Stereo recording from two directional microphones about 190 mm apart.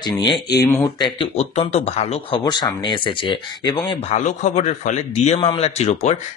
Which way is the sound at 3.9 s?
35° left (ahead or behind).